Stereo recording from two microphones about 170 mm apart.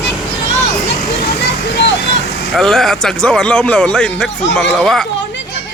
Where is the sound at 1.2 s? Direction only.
90° left.